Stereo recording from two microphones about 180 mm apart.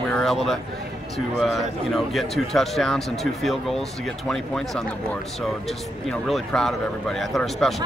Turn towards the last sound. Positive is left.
turn(degrees=0)  # may be behind; listen again after turning